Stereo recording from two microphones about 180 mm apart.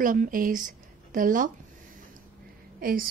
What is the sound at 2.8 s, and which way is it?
Speech, 55° right (ahead or behind).